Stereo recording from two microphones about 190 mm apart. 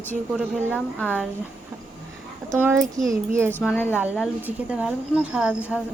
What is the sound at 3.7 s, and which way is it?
Speech, 10° left (ahead or behind).